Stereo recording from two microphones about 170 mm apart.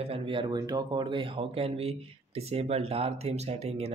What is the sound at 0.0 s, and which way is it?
Speech, 35° right (ahead or behind).